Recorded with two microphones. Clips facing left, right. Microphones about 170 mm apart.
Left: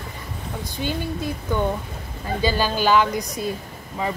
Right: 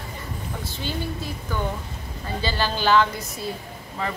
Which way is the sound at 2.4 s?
15° left (ahead or behind).